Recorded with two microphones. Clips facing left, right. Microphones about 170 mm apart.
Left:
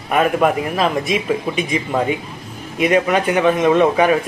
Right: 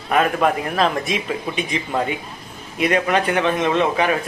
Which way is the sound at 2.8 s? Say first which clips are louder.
Left 3 dB; 15° left (ahead or behind).